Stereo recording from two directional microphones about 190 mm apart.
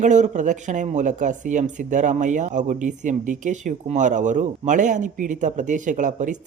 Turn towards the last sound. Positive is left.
turn(degrees=-40)  # may be behind; listen again after turning